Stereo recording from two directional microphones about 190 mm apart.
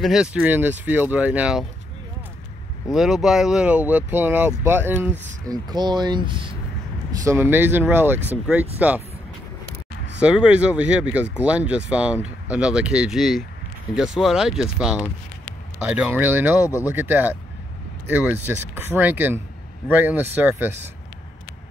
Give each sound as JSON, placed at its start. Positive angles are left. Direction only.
{"t": 0.0, "sound": "speech", "side_deg": -5}
{"t": 2.9, "sound": "speech", "side_deg": 0}
{"t": 7.2, "sound": "speech", "side_deg": -10}
{"t": 10.2, "sound": "speech", "side_deg": -5}